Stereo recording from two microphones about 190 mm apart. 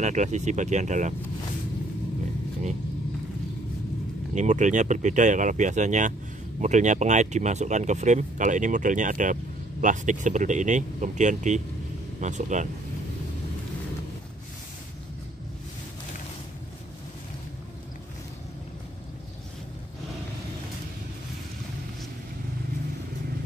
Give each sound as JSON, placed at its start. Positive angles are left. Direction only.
{"t": 0.0, "sound": "speech", "side_deg": -40}
{"t": 4.4, "sound": "speech", "side_deg": -40}